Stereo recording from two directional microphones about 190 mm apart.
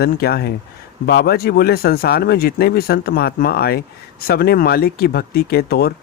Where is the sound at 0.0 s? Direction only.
55° left (ahead or behind).